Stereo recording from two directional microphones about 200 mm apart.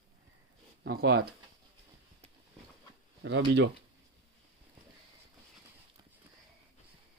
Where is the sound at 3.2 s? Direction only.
60° right (ahead or behind).